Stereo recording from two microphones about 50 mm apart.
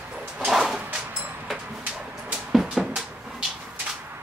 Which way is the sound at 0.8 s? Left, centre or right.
Right.